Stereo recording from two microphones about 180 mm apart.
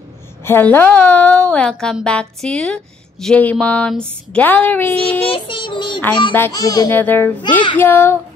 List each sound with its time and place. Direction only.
0.4 s a woman's voice: 10° left (ahead or behind)
5.3 s child singing: 30° left (ahead or behind)
6.3 s a child's voice: 15° left (ahead or behind)